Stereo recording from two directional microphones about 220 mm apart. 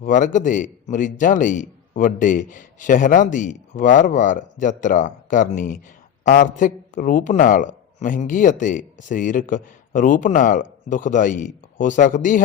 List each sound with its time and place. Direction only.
0.0 s a man's voice: 35° left (ahead or behind)